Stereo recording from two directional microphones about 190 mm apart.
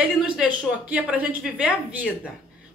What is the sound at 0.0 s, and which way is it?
A woman's voice, 5° right (ahead or behind).